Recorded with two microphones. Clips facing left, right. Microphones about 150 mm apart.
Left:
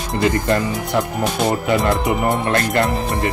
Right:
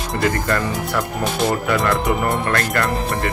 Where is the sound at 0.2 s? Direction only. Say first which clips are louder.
Left 3 dB; 20° left (ahead or behind).